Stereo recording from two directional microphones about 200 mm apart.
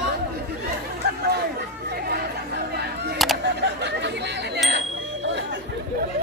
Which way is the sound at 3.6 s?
60° right (ahead or behind).